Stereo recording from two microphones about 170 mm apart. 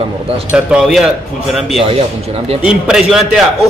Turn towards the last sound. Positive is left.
turn(degrees=0)  # may be behind; listen again after turning